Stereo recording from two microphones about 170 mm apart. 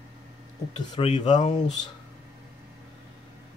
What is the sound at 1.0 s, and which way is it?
Speech, 40° left (ahead or behind).